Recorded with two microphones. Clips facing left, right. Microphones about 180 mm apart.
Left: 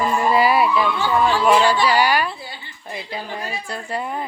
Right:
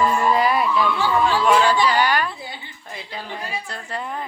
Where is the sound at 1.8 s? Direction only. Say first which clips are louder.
Left 2 dB; 10° left (ahead or behind).